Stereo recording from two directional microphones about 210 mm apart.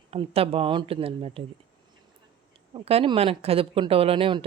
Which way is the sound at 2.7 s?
25° right (ahead or behind).